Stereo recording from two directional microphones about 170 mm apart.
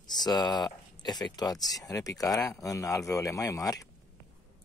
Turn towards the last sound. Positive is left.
turn(degrees=20)  # may be behind; listen again after turning